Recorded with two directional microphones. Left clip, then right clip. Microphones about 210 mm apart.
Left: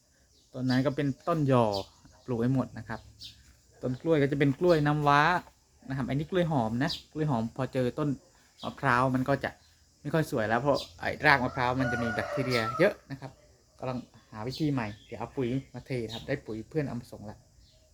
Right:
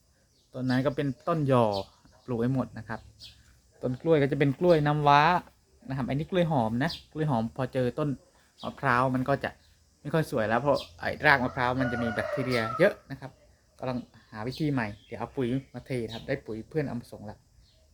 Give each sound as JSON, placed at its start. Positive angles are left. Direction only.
{"t": 0.5, "sound": "speech", "side_deg": -10}
{"t": 3.8, "sound": "speech", "side_deg": -20}